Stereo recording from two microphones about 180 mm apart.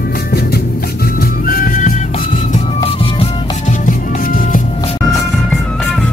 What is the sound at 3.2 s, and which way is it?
Music, 45° left (ahead or behind).